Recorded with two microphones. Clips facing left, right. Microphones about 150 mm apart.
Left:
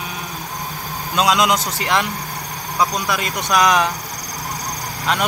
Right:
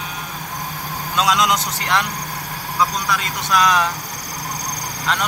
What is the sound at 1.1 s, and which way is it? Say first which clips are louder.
Speech: left 2 dB; 15° left (ahead or behind).